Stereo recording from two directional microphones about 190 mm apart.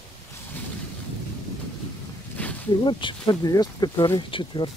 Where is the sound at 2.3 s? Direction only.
5° left (ahead or behind).